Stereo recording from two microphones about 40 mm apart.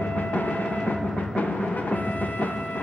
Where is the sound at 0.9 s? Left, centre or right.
Left.